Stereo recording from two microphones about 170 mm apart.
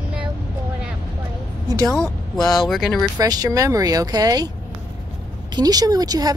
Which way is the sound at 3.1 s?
20° right (ahead or behind).